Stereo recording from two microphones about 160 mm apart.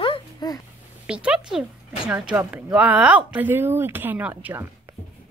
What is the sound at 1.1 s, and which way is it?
A woman's voice, 5° right (ahead or behind).